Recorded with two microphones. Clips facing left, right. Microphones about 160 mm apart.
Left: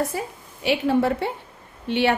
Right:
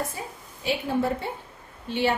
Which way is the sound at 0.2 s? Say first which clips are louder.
Left 7 dB; 75° left (ahead or behind).